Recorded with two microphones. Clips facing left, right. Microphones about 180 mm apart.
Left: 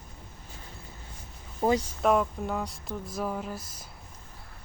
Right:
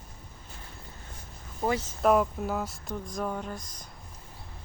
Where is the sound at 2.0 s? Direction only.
Centre (ahead or behind).